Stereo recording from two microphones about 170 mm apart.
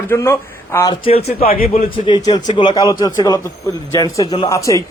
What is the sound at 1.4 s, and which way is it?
Speech, 60° left (ahead or behind).